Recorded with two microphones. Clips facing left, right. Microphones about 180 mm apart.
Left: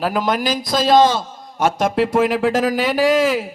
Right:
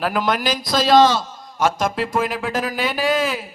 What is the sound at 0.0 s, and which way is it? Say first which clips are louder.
Speech: left 2 dB; 40° left (ahead or behind).